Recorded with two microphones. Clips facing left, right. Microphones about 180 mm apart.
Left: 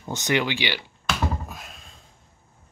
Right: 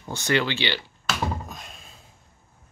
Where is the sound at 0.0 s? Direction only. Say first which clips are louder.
Even; 20° left (ahead or behind).